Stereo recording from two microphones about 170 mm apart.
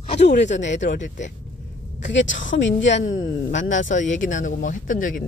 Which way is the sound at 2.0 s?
90° left.